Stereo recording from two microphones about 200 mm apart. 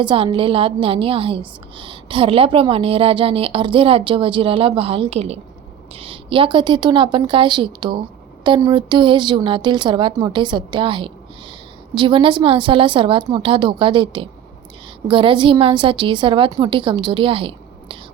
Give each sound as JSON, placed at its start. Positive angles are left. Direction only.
{"t": 0.0, "sound": "a woman's voice", "side_deg": -25}